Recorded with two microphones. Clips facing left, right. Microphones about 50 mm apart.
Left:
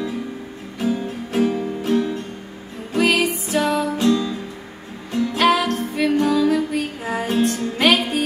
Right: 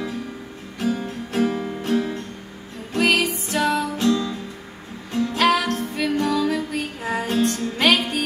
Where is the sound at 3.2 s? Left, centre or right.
Centre.